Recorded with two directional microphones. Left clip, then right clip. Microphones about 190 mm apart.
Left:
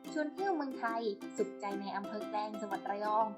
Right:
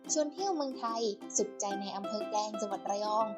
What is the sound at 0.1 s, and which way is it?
Speech, 25° right (ahead or behind).